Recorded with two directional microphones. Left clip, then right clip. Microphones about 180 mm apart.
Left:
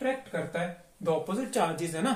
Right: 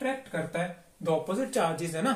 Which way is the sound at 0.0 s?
5° left (ahead or behind).